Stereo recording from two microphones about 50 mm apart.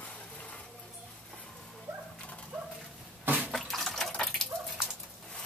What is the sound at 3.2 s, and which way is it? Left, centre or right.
Bathtub, right.